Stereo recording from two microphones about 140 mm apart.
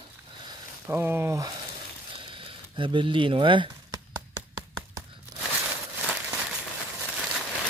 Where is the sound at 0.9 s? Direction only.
15° right (ahead or behind).